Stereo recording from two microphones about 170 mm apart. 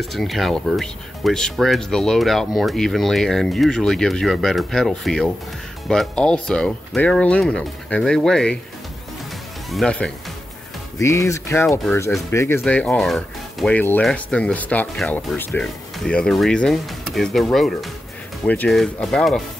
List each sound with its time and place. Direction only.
0.0 s speech: centre (ahead or behind)
9.7 s speech: 5° left (ahead or behind)
11.0 s speech: 15° left (ahead or behind); by 19.4 s centre (ahead or behind)